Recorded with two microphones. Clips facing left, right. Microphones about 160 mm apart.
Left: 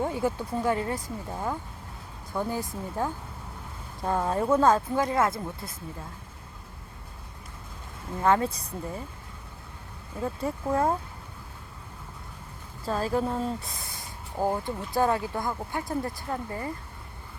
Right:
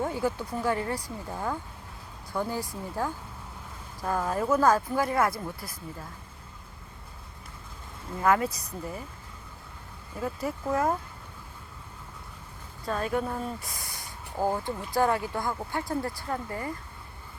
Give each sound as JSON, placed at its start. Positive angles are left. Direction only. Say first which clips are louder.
{"t": 0.0, "sound": "speech", "louder": "left 1 dB", "side_deg": 25}
{"t": 1.3, "sound": "speech", "louder": "even", "side_deg": 10}
{"t": 8.2, "sound": "speech", "louder": "left 1 dB", "side_deg": 30}
{"t": 10.2, "sound": "speech", "louder": "left 1 dB", "side_deg": 25}
{"t": 12.8, "sound": "speech", "louder": "left 2 dB", "side_deg": 30}
{"t": 14.3, "sound": "speech", "louder": "left 1 dB", "side_deg": 5}
{"t": 14.9, "sound": "speech", "louder": "even", "side_deg": 25}